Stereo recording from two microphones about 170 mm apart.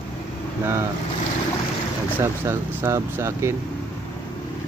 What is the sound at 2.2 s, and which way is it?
Speech, 15° right (ahead or behind).